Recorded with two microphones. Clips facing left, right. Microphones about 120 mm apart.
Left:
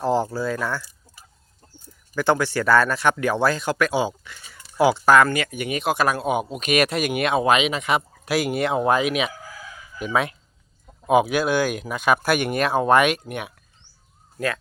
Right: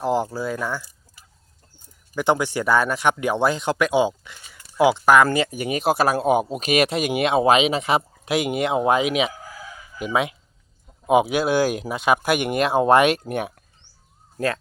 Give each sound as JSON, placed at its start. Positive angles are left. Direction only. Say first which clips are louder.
{"t": 0.0, "sound": "speech", "louder": "left 1 dB", "side_deg": -15}
{"t": 2.1, "sound": "speech", "louder": "even", "side_deg": -15}
{"t": 5.3, "sound": "speech", "louder": "right 3 dB", "side_deg": -30}